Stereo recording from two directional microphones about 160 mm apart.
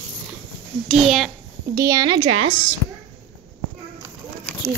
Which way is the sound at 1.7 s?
20° right (ahead or behind).